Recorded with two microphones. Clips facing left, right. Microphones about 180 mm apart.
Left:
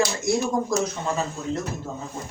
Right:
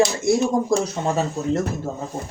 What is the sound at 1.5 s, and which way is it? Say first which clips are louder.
Speech: right 6 dB; 45° right (ahead or behind).